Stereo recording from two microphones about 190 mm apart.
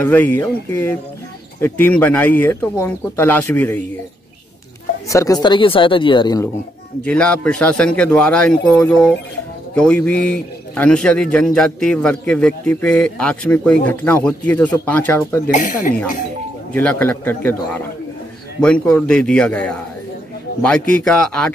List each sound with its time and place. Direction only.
0.0 s speech: 10° left (ahead or behind)
5.0 s speech: 15° left (ahead or behind)
7.1 s a man's voice: 5° left (ahead or behind)
15.5 s speech: 40° left (ahead or behind)
16.7 s a man's voice: 10° left (ahead or behind)
20.9 s a man's voice: 5° left (ahead or behind)